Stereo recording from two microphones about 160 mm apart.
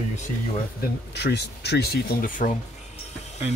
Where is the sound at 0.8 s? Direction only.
90° left; by 2.5 s 60° left (ahead or behind).